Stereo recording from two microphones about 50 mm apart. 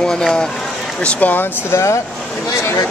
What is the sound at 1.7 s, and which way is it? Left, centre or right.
Speech, left.